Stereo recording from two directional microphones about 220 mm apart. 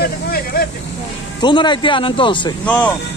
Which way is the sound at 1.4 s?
20° left (ahead or behind).